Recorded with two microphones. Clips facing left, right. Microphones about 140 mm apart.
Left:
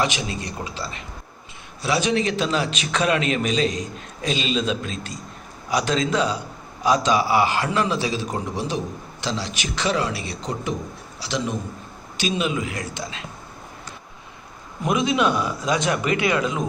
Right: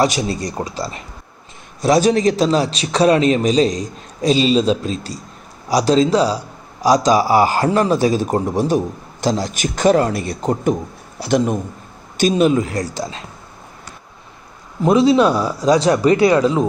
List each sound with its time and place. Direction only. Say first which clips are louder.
0.0 s a man's voice: right 7 dB; 40° right (ahead or behind)
14.8 s a man's voice: right 9 dB; 30° right (ahead or behind)